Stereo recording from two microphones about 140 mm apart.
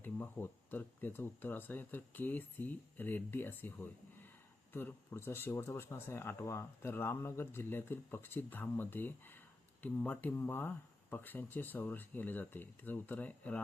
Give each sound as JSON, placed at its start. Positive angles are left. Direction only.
{"t": 0.0, "sound": "speech", "side_deg": 15}